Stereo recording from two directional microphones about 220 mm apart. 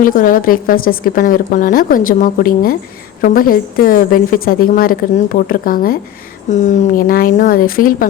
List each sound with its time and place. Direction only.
0.0 s a woman's voice: 40° left (ahead or behind)